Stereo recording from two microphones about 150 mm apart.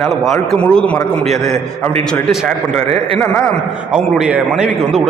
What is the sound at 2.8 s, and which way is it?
Speech, 45° right (ahead or behind).